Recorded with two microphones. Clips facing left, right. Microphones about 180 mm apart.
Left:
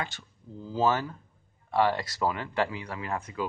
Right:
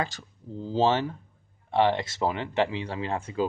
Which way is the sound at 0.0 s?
35° right (ahead or behind).